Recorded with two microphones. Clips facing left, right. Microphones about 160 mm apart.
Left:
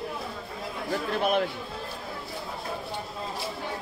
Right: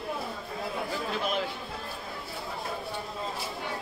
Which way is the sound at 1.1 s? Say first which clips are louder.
Left 7 dB; 55° left (ahead or behind).